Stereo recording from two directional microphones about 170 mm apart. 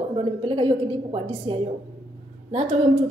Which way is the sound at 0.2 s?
30° right (ahead or behind).